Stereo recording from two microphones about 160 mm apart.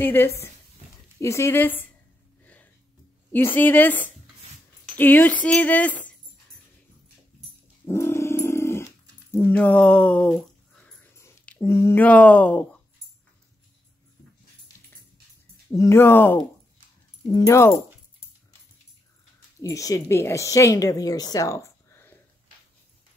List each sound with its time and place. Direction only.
0.0 s speech: 15° left (ahead or behind)
2.4 s a sound: 10° left (ahead or behind)
3.3 s speech: 15° left (ahead or behind)
7.9 s dog: 15° left (ahead or behind)
9.4 s speech: 10° left (ahead or behind)
11.1 s a sound: 15° left (ahead or behind)
11.6 s speech: 15° left (ahead or behind)
15.7 s a woman's voice: 20° left (ahead or behind)
19.6 s a woman's voice: 20° left (ahead or behind)